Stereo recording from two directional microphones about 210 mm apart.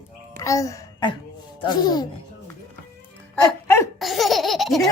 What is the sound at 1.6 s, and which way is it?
Speech, 20° left (ahead or behind).